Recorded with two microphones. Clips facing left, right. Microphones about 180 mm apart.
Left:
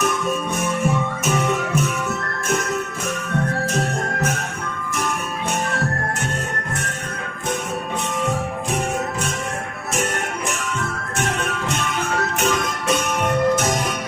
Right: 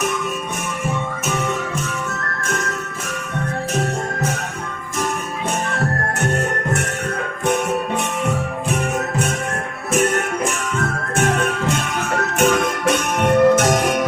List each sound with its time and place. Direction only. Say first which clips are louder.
13.2 s music: right 7 dB; 65° right (ahead or behind)